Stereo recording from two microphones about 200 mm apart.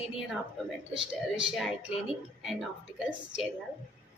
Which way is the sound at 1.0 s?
25° right (ahead or behind).